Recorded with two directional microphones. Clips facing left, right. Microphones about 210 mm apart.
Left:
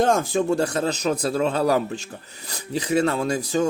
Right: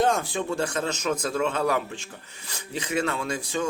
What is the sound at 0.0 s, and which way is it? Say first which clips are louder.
Speech: left 4 dB; 45° left (ahead or behind).